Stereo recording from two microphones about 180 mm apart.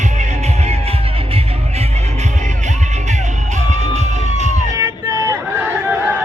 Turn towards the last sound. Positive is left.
turn(degrees=-5)  # may be behind; listen again after turning